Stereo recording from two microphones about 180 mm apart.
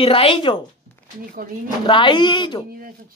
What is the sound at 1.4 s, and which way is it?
Speech, 50° right (ahead or behind).